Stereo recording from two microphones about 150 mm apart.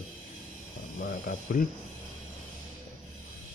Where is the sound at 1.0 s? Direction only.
75° left (ahead or behind).